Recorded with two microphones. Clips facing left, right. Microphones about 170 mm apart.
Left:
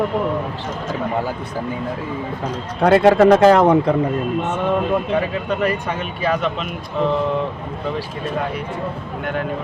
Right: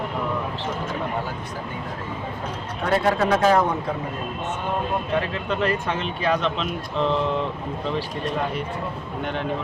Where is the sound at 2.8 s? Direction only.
80° left.